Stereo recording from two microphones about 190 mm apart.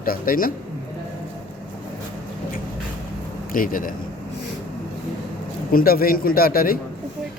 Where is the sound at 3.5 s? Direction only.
45° left (ahead or behind).